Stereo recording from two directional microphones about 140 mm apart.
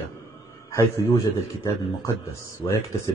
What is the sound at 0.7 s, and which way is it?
A man's voice, 20° left (ahead or behind).